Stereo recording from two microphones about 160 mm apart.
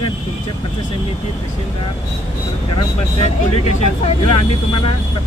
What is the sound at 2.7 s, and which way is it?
Speech, 40° left (ahead or behind).